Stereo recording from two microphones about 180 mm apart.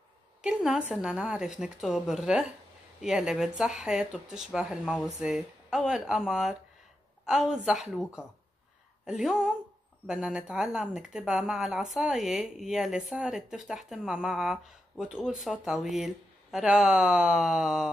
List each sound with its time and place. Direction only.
0.4 s speech: 5° right (ahead or behind)